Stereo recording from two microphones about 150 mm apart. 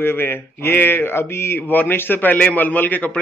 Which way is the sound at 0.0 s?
15° left (ahead or behind).